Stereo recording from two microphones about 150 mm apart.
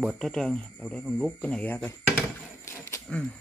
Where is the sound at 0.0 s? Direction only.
Centre (ahead or behind).